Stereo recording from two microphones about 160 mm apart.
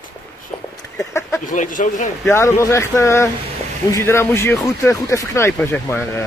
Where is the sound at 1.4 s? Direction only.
55° left (ahead or behind).